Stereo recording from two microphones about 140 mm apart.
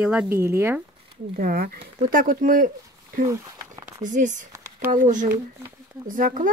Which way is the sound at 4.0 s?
65° right (ahead or behind).